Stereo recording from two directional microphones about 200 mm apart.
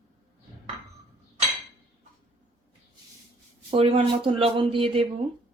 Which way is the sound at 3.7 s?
30° right (ahead or behind).